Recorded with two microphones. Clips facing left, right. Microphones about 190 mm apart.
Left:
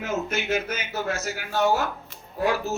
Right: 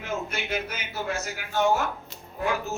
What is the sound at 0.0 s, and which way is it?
Speech, 45° left (ahead or behind).